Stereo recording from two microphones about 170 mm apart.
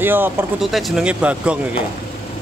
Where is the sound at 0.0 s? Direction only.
10° right (ahead or behind).